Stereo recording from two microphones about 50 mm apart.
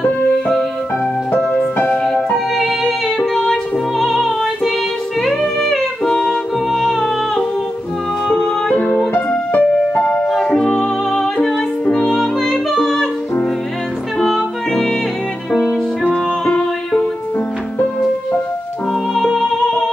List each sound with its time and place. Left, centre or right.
2.3 s music: centre
4.0 s music: centre
6.7 s music: centre
8.3 s music: left
10.4 s music: centre
11.9 s music: centre
14.2 s music: centre
16.0 s music: centre
19.1 s music: centre